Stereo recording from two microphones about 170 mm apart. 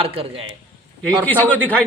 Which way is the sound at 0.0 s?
35° right (ahead or behind).